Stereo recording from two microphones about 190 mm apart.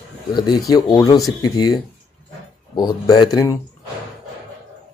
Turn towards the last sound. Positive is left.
turn(degrees=20)  # may be behind; listen again after turning